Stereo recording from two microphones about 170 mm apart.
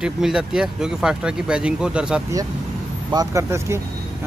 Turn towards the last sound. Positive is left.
turn(degrees=-15)  # may be behind; listen again after turning